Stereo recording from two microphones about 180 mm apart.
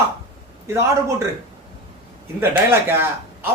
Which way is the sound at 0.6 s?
15° right (ahead or behind).